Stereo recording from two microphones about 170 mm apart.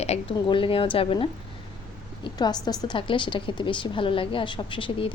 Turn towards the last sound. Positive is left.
turn(degrees=30)  # may be behind; listen again after turning